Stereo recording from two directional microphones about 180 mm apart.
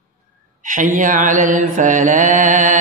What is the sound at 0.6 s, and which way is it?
Mantra, 45° right (ahead or behind).